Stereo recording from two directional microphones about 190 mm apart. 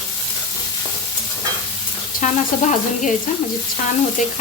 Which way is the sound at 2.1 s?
40° left (ahead or behind).